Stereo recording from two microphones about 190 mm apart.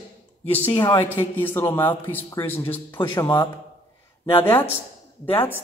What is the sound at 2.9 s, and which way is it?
Speech, 25° left (ahead or behind).